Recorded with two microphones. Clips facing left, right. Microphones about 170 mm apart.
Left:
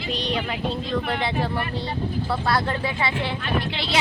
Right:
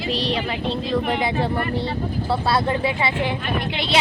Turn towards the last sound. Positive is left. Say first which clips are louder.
# right 2 dB
turn(degrees=-20)  # may be behind; listen again after turning